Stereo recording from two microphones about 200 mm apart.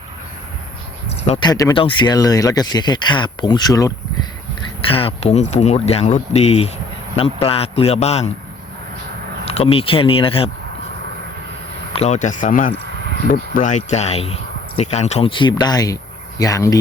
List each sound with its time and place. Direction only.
1.3 s speech: 20° left (ahead or behind)
4.9 s speech: 30° left (ahead or behind)
9.5 s speech: 30° left (ahead or behind)
11.9 s speech: 35° left (ahead or behind); by 16.7 s 15° left (ahead or behind)